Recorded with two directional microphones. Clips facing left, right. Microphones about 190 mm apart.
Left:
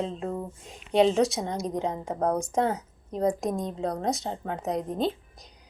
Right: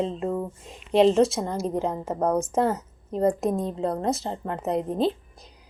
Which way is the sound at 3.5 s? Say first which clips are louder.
Right 3 dB; 30° right (ahead or behind).